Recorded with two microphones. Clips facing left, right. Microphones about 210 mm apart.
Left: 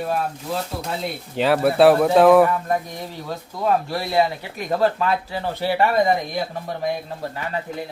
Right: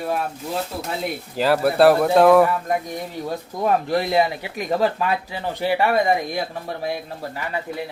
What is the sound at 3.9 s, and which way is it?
Speech, 20° right (ahead or behind).